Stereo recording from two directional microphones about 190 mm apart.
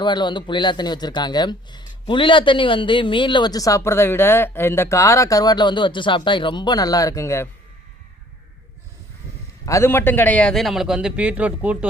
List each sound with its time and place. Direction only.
0.0 s speech: 25° left (ahead or behind)
9.6 s a man's voice: 15° left (ahead or behind); by 11.9 s 5° right (ahead or behind)